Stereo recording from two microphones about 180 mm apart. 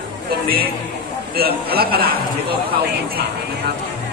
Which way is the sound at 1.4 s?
60° right (ahead or behind).